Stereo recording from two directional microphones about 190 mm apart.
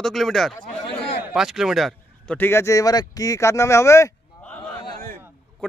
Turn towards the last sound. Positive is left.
turn(degrees=25)  # may be behind; listen again after turning